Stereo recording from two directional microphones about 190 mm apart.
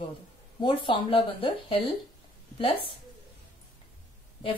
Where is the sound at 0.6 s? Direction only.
25° left (ahead or behind).